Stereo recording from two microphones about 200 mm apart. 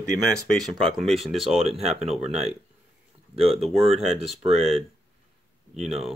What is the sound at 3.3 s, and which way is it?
Speech, 30° right (ahead or behind).